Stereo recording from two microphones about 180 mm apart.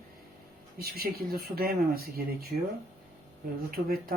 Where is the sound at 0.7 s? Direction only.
60° right (ahead or behind).